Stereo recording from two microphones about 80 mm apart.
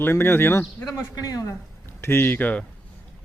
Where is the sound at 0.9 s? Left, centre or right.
Left.